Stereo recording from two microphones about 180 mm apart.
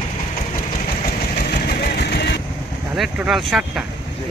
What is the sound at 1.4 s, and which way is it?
Vehicle, 60° left (ahead or behind).